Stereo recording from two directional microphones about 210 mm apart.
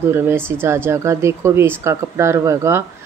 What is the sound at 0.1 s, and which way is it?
Speech, 10° right (ahead or behind).